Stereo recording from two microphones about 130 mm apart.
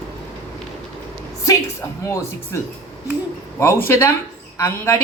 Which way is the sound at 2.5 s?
20° left (ahead or behind).